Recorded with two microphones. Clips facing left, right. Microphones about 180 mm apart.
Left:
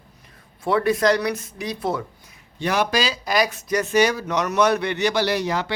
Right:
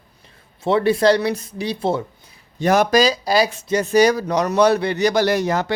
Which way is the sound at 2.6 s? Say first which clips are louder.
Right 6 dB; 45° right (ahead or behind).